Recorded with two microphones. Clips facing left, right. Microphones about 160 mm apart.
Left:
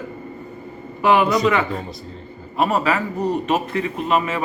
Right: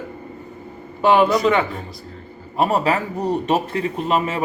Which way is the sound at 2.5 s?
35° right (ahead or behind).